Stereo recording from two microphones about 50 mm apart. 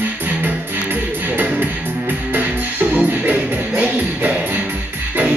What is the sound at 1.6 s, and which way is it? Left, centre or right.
Music, right.